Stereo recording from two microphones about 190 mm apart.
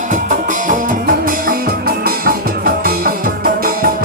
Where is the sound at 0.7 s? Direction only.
45° right (ahead or behind).